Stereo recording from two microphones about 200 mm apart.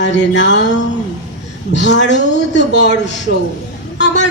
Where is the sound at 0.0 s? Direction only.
60° left (ahead or behind).